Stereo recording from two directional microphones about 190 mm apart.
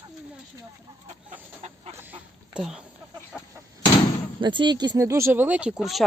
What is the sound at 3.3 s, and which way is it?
Chicken, centre (ahead or behind).